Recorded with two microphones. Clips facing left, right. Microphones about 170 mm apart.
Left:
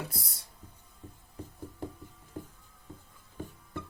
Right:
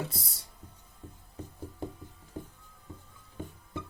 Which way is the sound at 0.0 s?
25° right (ahead or behind).